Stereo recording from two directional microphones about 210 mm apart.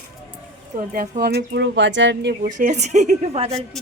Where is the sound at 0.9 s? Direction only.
45° right (ahead or behind).